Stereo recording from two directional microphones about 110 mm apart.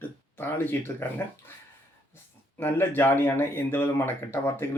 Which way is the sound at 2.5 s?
20° left (ahead or behind).